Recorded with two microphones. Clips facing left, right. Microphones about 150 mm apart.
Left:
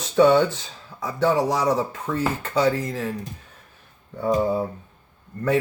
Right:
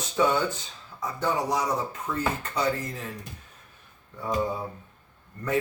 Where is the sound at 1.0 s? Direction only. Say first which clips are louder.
Left 7 dB; 90° left.